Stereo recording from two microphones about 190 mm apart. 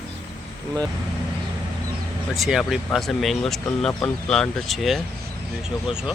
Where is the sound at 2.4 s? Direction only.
Centre (ahead or behind).